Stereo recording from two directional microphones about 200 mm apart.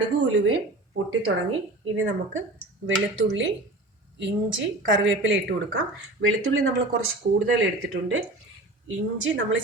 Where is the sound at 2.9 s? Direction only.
70° right (ahead or behind).